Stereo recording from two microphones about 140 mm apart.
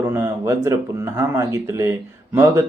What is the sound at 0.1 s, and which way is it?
Speech, 20° right (ahead or behind).